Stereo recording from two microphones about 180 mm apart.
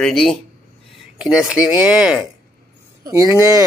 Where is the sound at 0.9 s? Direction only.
Centre (ahead or behind).